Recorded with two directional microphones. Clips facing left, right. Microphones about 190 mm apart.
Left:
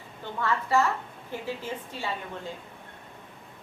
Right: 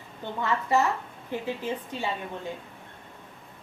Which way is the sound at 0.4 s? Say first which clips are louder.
Even; 20° right (ahead or behind).